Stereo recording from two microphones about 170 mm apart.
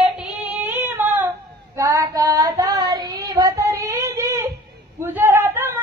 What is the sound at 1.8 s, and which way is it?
Child singing, 20° right (ahead or behind).